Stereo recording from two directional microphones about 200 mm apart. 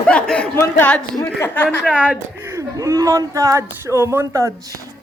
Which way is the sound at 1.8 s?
5° right (ahead or behind).